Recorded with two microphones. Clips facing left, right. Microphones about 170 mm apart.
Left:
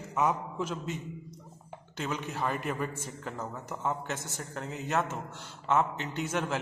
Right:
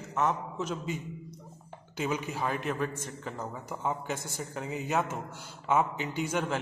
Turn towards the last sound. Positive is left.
turn(degrees=0)  # may be behind; listen again after turning